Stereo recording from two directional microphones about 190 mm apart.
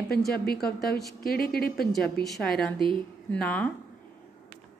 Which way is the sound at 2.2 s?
Centre (ahead or behind).